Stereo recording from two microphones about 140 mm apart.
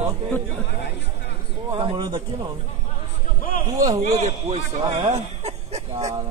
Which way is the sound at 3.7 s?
25° right (ahead or behind).